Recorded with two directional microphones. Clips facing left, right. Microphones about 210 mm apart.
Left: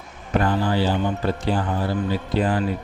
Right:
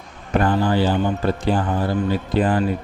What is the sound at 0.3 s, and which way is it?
Speech, 50° right (ahead or behind).